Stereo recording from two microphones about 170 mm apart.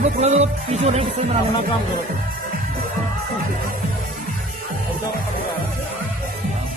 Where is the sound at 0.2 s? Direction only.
40° right (ahead or behind).